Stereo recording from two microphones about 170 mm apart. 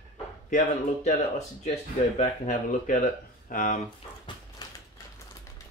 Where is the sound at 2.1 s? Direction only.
45° left (ahead or behind).